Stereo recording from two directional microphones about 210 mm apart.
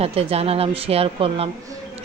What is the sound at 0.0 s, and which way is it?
A woman's voice, 30° right (ahead or behind).